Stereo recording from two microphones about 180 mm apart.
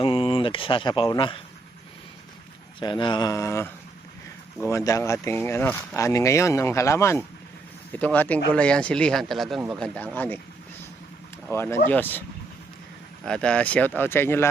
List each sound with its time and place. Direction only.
0.0 s speech: 30° left (ahead or behind)
2.8 s speech: 25° left (ahead or behind)
4.7 s speech: 20° left (ahead or behind)
11.4 s speech: 10° left (ahead or behind)
13.2 s speech: 5° left (ahead or behind)